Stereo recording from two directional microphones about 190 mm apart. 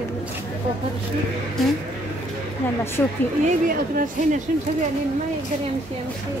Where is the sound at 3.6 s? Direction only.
45° right (ahead or behind).